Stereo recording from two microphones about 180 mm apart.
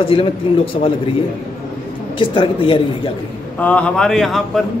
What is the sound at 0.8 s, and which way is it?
Speech, 45° left (ahead or behind).